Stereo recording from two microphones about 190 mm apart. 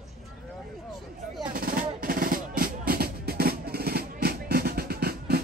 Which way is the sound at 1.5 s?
50° right (ahead or behind).